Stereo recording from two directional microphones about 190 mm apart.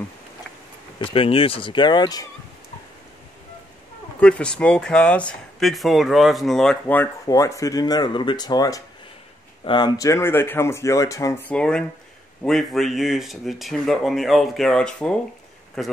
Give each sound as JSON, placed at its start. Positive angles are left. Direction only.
{"t": 0.9, "sound": "speech", "side_deg": 30}
{"t": 4.2, "sound": "speech", "side_deg": 5}